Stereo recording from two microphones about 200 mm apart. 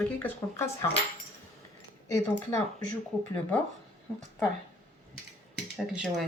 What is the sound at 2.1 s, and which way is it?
Speech, 35° right (ahead or behind).